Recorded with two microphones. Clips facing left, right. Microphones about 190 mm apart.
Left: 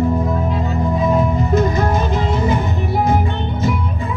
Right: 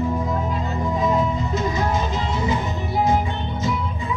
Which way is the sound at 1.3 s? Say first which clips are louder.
Left 7 dB; 55° left (ahead or behind).